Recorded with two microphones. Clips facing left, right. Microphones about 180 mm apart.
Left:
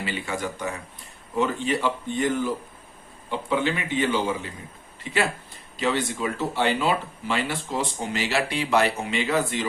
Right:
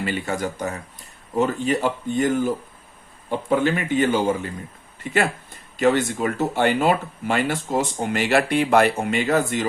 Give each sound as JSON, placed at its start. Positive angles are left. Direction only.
{"t": 0.0, "sound": "speech", "side_deg": -45}